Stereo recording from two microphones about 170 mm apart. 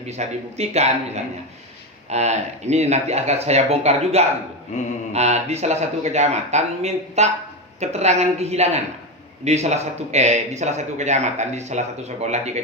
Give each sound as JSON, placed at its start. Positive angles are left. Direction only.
{"t": 0.1, "sound": "a man's voice", "side_deg": -40}